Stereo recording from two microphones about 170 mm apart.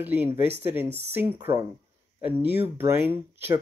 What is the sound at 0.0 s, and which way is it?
Speech, 10° right (ahead or behind).